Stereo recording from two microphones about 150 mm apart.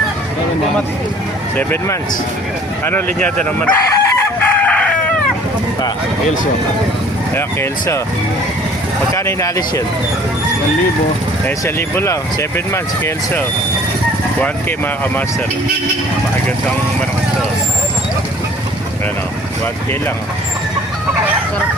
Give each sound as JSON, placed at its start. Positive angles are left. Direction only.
{"t": 1.5, "sound": "speech", "side_deg": 15}
{"t": 3.8, "sound": "chicken", "side_deg": 20}
{"t": 7.3, "sound": "speech", "side_deg": 15}
{"t": 9.1, "sound": "speech", "side_deg": 20}
{"t": 11.4, "sound": "speech", "side_deg": 15}